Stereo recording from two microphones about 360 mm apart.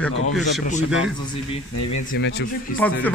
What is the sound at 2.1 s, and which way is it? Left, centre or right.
Speech, left.